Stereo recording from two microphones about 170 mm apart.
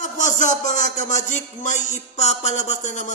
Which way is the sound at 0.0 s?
45° left (ahead or behind).